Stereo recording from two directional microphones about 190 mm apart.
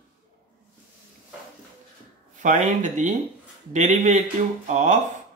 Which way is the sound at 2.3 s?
40° right (ahead or behind).